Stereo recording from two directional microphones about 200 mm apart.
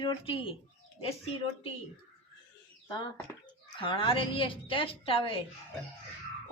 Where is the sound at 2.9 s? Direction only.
25° left (ahead or behind).